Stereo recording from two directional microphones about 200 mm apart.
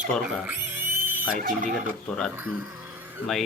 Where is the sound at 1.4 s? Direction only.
40° right (ahead or behind).